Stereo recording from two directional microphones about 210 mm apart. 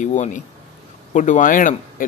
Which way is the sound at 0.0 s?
35° left (ahead or behind).